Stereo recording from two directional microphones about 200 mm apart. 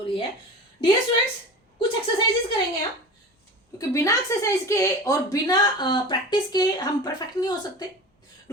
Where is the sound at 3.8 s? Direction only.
15° left (ahead or behind).